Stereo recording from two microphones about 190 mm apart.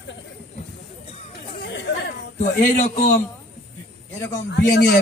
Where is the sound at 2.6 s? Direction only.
40° left (ahead or behind).